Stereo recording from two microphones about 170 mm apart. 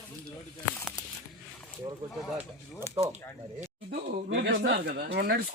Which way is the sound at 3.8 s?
80° right.